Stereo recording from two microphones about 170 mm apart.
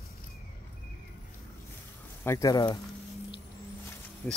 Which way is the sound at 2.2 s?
20° left (ahead or behind).